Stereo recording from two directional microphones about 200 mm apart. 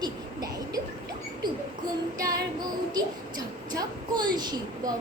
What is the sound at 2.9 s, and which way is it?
A woman's voice, 20° right (ahead or behind).